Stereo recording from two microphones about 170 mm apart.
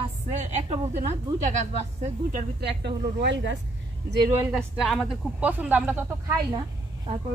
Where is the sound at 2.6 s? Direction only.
80° right.